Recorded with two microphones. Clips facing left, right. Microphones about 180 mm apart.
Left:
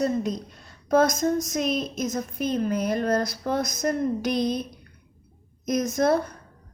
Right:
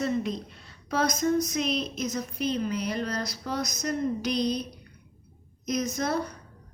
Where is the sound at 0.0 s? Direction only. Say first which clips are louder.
Left 3 dB; 45° left (ahead or behind).